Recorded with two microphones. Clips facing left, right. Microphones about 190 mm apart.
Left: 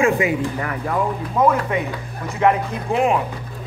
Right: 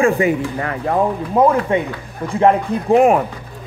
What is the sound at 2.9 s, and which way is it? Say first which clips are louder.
Speech: right 7 dB; 45° right (ahead or behind).